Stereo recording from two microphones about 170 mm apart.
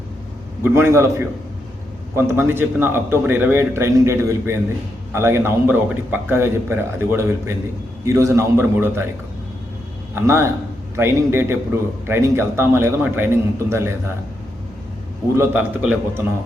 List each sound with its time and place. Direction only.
0.6 s a man's voice: 15° right (ahead or behind)
2.1 s a man's voice: 15° right (ahead or behind)
10.2 s a man's voice: 15° right (ahead or behind)
15.4 s a man's voice: 5° right (ahead or behind)